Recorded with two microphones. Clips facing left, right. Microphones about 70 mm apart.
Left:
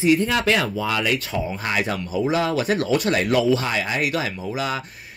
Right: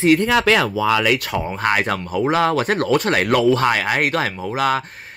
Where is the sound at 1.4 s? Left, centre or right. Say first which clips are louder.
Right 5 dB; right.